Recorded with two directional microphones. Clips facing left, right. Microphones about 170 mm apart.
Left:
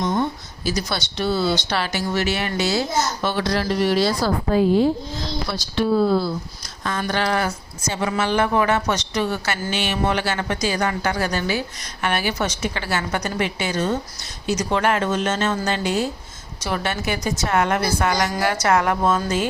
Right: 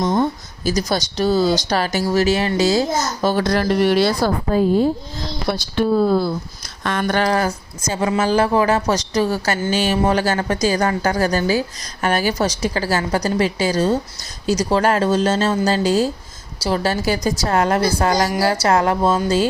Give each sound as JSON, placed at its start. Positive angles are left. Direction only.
{"t": 0.0, "sound": "speech", "side_deg": -45}
{"t": 4.5, "sound": "speech", "side_deg": -45}